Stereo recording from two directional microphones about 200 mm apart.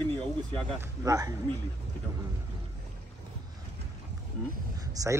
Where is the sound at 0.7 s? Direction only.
15° right (ahead or behind).